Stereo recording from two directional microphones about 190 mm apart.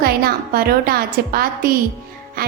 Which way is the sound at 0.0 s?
55° right (ahead or behind).